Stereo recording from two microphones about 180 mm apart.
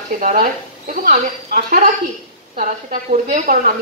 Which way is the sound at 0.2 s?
45° right (ahead or behind).